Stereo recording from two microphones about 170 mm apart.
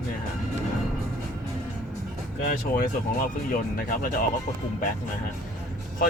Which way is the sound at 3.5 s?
55° left (ahead or behind).